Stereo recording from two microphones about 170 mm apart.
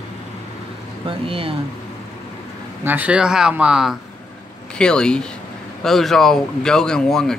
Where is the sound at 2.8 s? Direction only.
10° right (ahead or behind).